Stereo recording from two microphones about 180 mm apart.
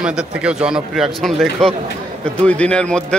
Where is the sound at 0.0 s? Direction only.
5° right (ahead or behind).